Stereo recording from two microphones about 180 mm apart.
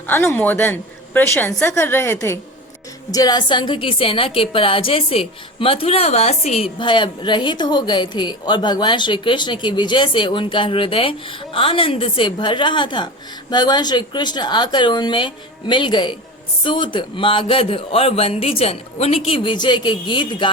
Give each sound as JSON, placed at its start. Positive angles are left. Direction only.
{"t": 0.3, "sound": "a woman's voice", "side_deg": 5}